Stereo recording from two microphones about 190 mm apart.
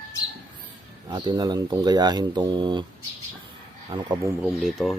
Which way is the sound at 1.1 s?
20° right (ahead or behind).